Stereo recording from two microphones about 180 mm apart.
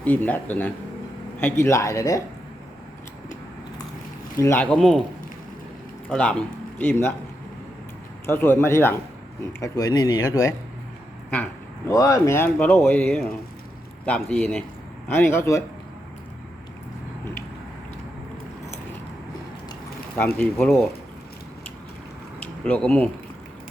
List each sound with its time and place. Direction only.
0.0 s speech: 10° left (ahead or behind)
4.4 s speech: 15° left (ahead or behind)
6.1 s speech: 5° left (ahead or behind)
8.3 s speech: 10° left (ahead or behind)
11.9 s speech: 15° left (ahead or behind)
20.1 s speech: 10° left (ahead or behind)
22.4 s a sound: 10° left (ahead or behind)